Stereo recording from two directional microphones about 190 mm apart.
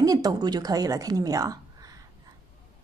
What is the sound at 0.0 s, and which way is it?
A woman's voice, 20° right (ahead or behind).